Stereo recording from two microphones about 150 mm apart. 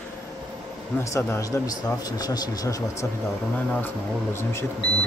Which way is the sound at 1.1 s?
20° left (ahead or behind).